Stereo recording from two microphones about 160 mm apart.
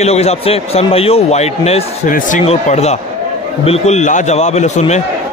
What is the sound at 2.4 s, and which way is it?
A man's voice, 45° left (ahead or behind).